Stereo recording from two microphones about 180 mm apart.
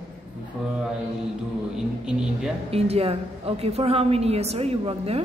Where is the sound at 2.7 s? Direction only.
35° right (ahead or behind).